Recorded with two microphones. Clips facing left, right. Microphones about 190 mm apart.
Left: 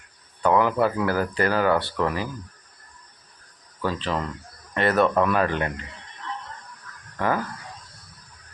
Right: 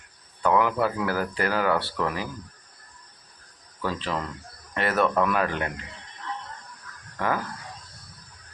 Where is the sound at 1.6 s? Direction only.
25° left (ahead or behind).